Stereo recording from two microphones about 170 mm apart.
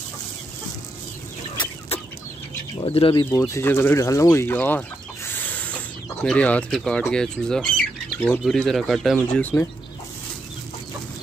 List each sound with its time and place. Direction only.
2.8 s speech: 30° left (ahead or behind)
3.3 s speech: 15° left (ahead or behind)